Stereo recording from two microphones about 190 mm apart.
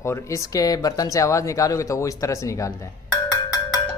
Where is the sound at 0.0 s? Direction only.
15° left (ahead or behind).